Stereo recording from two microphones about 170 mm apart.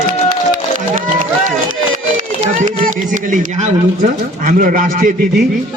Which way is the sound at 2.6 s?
50° right (ahead or behind).